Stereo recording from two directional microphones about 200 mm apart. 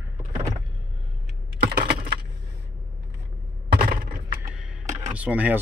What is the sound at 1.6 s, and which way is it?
Computer keyboard, 50° right (ahead or behind).